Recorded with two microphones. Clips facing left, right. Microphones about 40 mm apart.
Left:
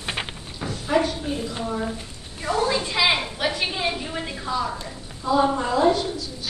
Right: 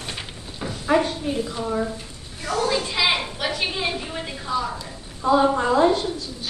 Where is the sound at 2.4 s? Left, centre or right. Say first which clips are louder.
Left 1 dB; left.